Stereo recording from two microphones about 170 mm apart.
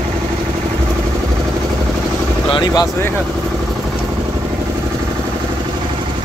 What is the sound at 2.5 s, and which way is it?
Vehicle, 30° left (ahead or behind).